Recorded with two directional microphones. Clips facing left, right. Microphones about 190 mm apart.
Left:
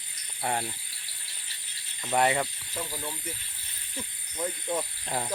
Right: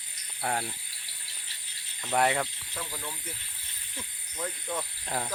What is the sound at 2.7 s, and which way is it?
Speech, 15° left (ahead or behind).